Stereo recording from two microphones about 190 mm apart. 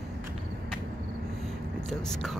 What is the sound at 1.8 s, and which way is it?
Speech, 5° left (ahead or behind).